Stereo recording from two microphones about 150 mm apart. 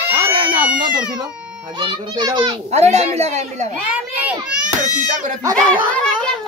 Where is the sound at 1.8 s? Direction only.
30° right (ahead or behind).